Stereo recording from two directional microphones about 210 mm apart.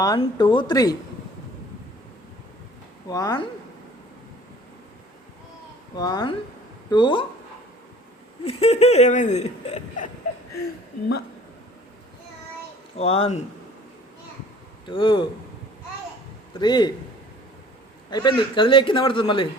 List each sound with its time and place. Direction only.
0.0 s a man's voice: 20° left (ahead or behind)
3.1 s speech: 15° left (ahead or behind)
6.0 s a man's voice: 20° left (ahead or behind)
8.4 s speech: 30° left (ahead or behind)
13.0 s a man's voice: 30° left (ahead or behind)
14.8 s a man's voice: 25° left (ahead or behind)
16.6 s a man's voice: 20° left (ahead or behind)
18.1 s a man's voice: 20° left (ahead or behind)